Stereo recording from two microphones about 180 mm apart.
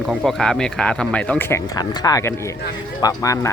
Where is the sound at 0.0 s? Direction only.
Centre (ahead or behind).